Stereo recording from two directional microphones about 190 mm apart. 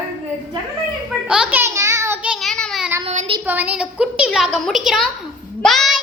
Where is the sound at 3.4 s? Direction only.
10° right (ahead or behind).